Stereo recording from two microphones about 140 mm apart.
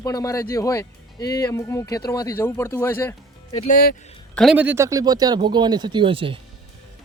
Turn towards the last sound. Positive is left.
turn(degrees=-40)  # may be behind; listen again after turning